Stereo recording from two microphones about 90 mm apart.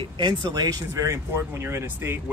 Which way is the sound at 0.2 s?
50° right (ahead or behind).